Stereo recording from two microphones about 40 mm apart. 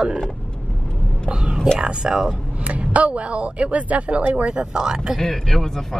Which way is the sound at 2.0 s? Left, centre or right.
Centre.